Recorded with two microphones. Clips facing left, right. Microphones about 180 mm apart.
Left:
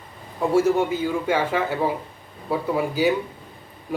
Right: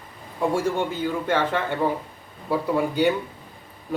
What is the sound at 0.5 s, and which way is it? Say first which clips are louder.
A man's voice: left 9 dB; 5° left (ahead or behind).